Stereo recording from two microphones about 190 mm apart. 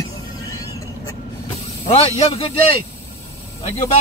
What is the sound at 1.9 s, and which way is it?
Speech, 35° left (ahead or behind).